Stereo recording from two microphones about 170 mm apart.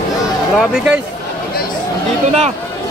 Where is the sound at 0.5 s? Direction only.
5° right (ahead or behind).